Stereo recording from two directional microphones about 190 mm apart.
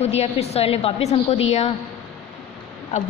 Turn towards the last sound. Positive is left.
turn(degrees=40)  # may be behind; listen again after turning